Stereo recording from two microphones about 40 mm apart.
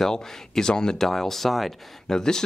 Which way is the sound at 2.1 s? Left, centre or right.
Centre.